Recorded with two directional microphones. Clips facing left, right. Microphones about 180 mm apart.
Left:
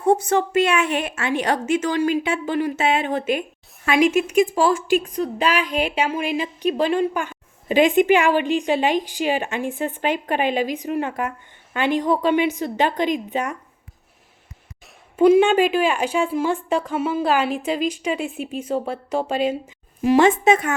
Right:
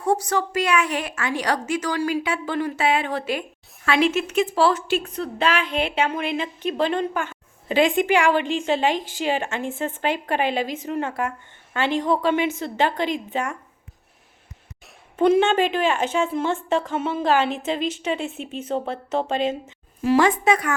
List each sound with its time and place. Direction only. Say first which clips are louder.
0.0 s a woman's voice: left 4 dB; 20° left (ahead or behind)
15.1 s a woman's voice: left 4 dB; 10° left (ahead or behind)